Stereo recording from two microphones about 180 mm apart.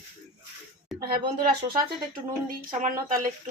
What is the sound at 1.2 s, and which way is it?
Speech, 25° right (ahead or behind).